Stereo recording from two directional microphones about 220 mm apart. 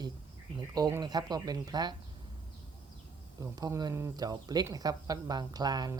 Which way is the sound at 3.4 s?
15° right (ahead or behind).